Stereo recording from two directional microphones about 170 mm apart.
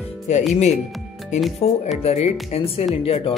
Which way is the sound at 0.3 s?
40° left (ahead or behind).